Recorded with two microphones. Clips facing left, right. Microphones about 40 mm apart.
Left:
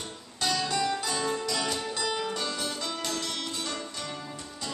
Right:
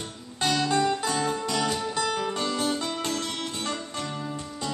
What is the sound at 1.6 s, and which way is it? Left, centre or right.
Music, centre.